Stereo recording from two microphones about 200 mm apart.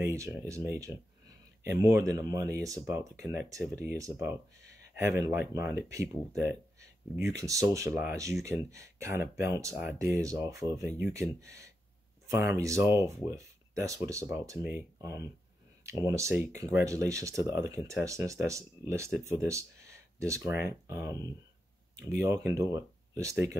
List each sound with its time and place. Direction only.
0.0 s speech: 15° right (ahead or behind)
12.3 s speech: 15° right (ahead or behind)